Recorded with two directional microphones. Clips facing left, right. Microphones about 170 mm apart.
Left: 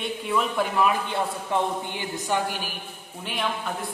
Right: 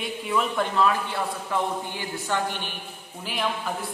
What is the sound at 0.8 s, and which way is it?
Speech, 15° left (ahead or behind).